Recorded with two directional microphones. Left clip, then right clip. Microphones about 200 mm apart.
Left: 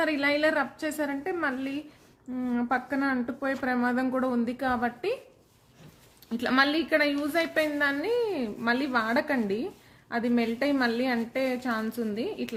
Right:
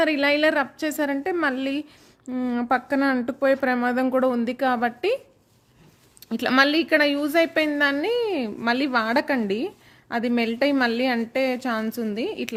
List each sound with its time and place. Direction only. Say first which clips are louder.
0.0 s a woman's voice: right 5 dB; 50° right (ahead or behind)
6.2 s a woman's voice: right 5 dB; 55° right (ahead or behind)